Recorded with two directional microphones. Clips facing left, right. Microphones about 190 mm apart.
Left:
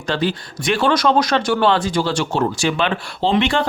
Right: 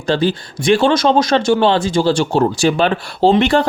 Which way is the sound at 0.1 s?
30° right (ahead or behind).